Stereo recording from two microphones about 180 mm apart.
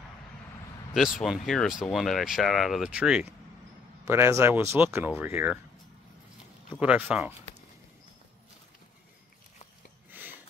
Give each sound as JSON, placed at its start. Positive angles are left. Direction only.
{"t": 0.9, "sound": "speech", "side_deg": 0}
{"t": 6.7, "sound": "speech", "side_deg": -10}
{"t": 10.1, "sound": "a sound", "side_deg": -10}